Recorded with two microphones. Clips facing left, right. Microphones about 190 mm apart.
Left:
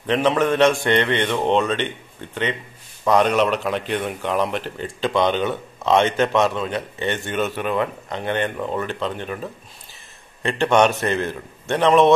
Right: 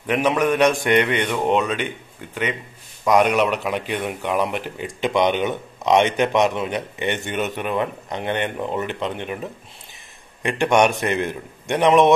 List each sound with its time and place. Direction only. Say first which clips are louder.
0.0 s speech: left 1 dB; 10° right (ahead or behind)
3.1 s speech: even; 10° right (ahead or behind)